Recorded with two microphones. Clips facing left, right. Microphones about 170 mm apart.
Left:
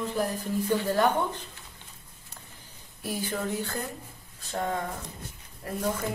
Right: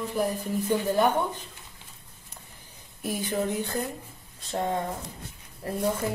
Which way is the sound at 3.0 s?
20° right (ahead or behind).